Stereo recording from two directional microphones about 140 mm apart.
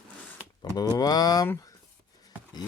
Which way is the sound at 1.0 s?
30° left (ahead or behind).